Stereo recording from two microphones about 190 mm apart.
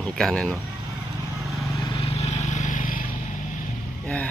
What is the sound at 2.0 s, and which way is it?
Vehicle, 35° left (ahead or behind).